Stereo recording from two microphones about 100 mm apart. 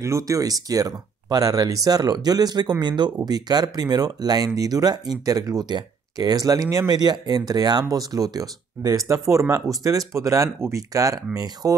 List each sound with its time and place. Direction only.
0.0 s speech: 30° right (ahead or behind)